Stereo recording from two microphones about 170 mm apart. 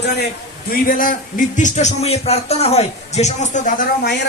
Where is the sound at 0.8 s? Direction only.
55° left (ahead or behind).